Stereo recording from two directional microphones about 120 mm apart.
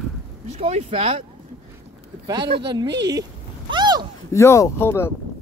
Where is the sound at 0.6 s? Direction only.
60° right (ahead or behind).